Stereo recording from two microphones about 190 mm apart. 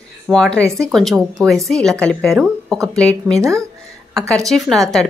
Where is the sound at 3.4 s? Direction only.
15° right (ahead or behind).